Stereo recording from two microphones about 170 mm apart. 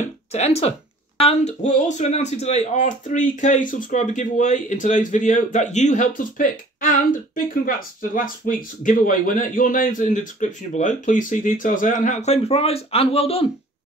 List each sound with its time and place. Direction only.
0.3 s speech: 35° left (ahead or behind)